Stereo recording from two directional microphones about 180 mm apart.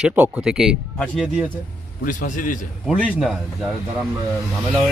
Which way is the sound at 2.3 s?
50° left (ahead or behind).